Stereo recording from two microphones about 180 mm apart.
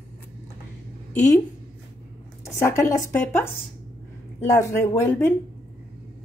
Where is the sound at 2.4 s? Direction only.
15° left (ahead or behind).